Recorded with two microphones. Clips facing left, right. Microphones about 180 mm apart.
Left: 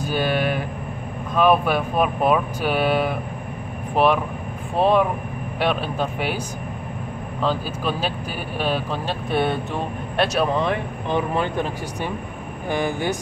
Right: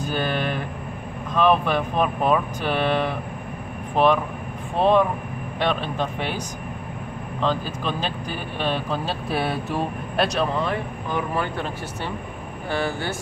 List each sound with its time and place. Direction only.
0.0 s a sound: 10° left (ahead or behind)
1.3 s speech: 10° left (ahead or behind)
7.4 s speech: 5° left (ahead or behind)
10.6 s speech: 25° left (ahead or behind)